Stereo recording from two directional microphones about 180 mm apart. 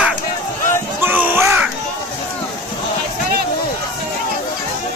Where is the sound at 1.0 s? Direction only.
10° right (ahead or behind).